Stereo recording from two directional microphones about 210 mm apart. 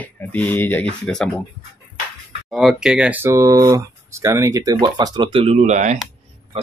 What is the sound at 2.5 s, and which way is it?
Speech, centre (ahead or behind).